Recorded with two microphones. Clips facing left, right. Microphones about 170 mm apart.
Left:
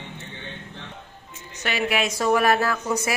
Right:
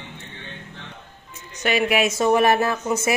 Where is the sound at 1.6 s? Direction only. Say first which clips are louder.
Right 4 dB; 15° right (ahead or behind).